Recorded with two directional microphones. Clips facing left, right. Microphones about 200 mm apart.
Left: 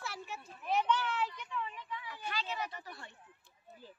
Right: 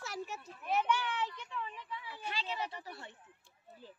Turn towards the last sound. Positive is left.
turn(degrees=-25)  # may be behind; listen again after turning